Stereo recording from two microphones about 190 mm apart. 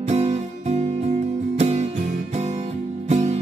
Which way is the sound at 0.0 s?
35° right (ahead or behind).